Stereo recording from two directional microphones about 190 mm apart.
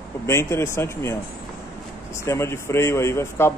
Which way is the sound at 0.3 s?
15° left (ahead or behind).